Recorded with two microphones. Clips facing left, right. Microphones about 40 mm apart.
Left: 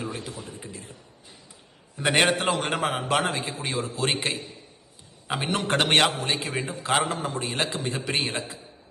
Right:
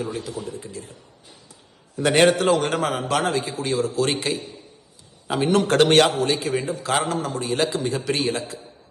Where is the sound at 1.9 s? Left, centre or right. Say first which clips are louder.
Right 5 dB; left.